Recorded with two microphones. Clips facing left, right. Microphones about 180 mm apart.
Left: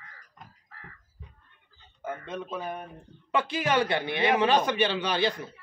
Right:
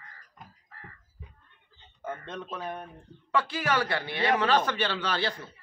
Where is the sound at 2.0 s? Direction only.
5° left (ahead or behind).